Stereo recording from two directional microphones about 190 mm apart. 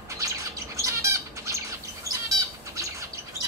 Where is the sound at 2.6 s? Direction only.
15° right (ahead or behind).